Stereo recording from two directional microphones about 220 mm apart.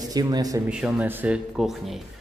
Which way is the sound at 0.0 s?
15° right (ahead or behind).